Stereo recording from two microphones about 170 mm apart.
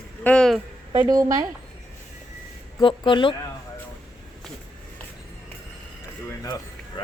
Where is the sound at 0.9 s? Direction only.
25° right (ahead or behind).